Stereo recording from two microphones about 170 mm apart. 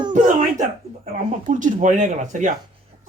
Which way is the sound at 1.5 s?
50° right (ahead or behind).